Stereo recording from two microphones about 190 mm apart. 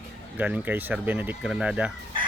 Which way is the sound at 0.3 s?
10° right (ahead or behind).